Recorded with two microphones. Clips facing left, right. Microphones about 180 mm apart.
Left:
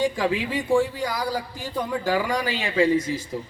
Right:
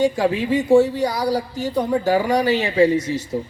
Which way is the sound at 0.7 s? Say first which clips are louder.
Right 7 dB; 40° right (ahead or behind).